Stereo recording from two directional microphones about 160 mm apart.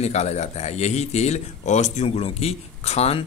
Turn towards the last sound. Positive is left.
turn(degrees=40)  # may be behind; listen again after turning